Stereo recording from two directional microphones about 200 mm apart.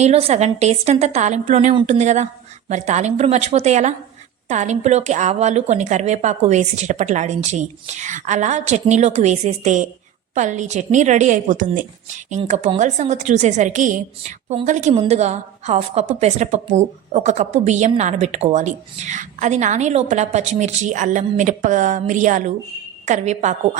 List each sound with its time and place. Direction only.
0.0 s a woman's voice: 30° right (ahead or behind)